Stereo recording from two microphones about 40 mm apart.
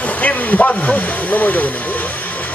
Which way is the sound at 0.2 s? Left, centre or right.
Left.